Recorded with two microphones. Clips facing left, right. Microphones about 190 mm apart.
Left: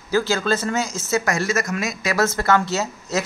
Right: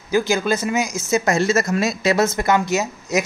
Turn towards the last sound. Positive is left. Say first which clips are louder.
# right 3 dB
turn(degrees=-15)  # may be behind; listen again after turning